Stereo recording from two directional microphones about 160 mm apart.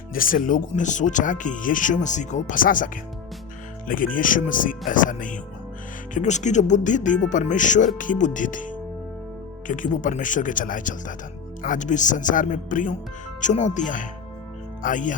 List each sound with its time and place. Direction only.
0.1 s speech: 60° left (ahead or behind)